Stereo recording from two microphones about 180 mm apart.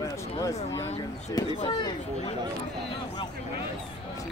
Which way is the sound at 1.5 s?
30° left (ahead or behind).